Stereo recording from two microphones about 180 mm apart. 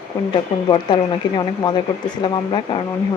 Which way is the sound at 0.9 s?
25° left (ahead or behind).